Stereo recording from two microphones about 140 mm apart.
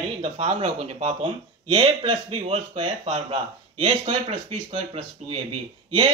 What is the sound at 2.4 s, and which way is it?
Speech, 50° right (ahead or behind).